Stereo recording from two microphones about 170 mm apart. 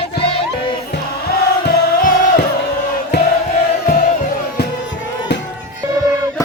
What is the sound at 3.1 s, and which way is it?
Crowd, 75° left (ahead or behind).